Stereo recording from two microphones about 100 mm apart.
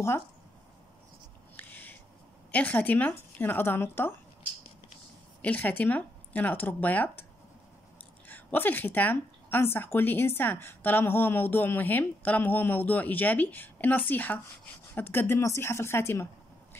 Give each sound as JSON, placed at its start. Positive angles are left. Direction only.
{"t": 1.6, "sound": "a sound", "side_deg": 20}
{"t": 2.5, "sound": "speech", "side_deg": 15}
{"t": 5.4, "sound": "speech", "side_deg": 15}
{"t": 8.3, "sound": "speech", "side_deg": 20}